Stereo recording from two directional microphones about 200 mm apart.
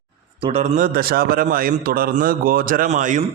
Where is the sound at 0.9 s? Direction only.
50° right (ahead or behind).